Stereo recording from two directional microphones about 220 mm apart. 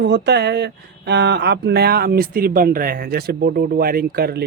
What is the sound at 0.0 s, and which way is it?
Speech, 50° right (ahead or behind).